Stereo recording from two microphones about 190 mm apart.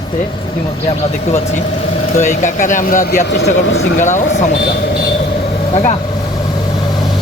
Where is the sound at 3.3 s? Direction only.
75° left (ahead or behind).